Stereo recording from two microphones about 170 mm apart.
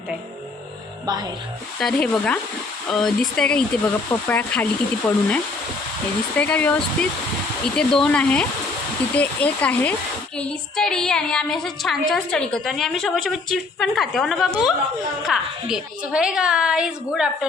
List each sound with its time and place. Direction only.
1.0 s speech: 25° right (ahead or behind)
1.8 s a woman's voice: 5° left (ahead or behind)